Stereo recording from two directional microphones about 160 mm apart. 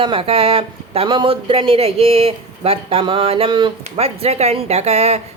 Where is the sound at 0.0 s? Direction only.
35° right (ahead or behind).